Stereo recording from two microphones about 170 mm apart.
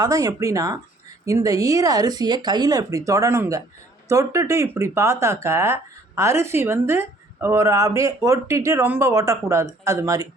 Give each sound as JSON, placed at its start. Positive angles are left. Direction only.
{"t": 0.0, "sound": "speech", "side_deg": -20}